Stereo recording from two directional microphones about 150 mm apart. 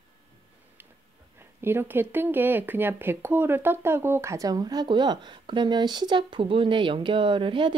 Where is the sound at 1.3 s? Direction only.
15° right (ahead or behind).